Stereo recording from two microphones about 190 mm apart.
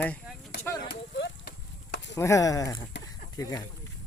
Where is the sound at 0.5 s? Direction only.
60° left (ahead or behind).